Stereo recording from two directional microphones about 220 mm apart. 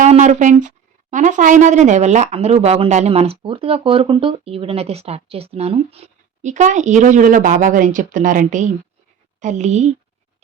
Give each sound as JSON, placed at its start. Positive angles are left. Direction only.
{"t": 0.0, "sound": "speech", "side_deg": -35}